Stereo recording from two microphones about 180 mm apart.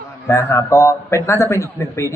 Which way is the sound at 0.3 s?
15° left (ahead or behind).